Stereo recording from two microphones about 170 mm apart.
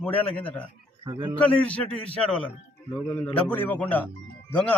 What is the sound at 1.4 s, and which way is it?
A man's voice, 10° left (ahead or behind).